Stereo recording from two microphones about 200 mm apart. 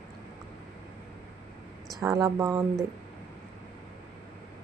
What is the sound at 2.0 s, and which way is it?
Speech, 15° right (ahead or behind).